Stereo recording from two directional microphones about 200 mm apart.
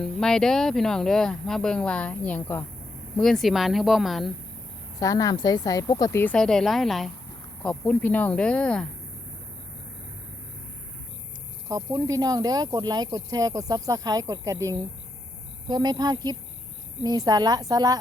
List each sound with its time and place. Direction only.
0.0 s speech: 5° left (ahead or behind)
4.9 s a woman's voice: 15° left (ahead or behind)
11.7 s a woman's voice: 15° right (ahead or behind)